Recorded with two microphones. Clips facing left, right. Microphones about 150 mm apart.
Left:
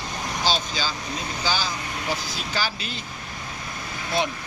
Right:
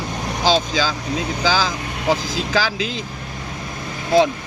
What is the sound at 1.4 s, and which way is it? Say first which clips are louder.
Speech: right 6 dB; 90° right.